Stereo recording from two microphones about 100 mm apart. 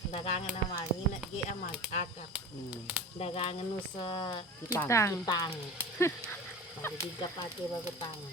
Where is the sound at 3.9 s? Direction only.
50° left (ahead or behind).